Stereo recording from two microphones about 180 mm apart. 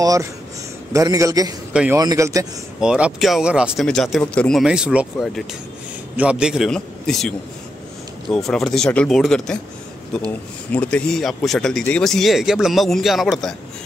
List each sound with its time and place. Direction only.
0.0 s a man's voice: 20° right (ahead or behind)
1.7 s a man's voice: 5° right (ahead or behind)
2.0 s a man's voice: 20° right (ahead or behind)
2.8 s speech: 5° right (ahead or behind)